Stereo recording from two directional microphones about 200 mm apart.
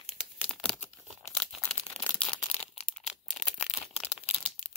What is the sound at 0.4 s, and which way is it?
Crumpling, centre (ahead or behind).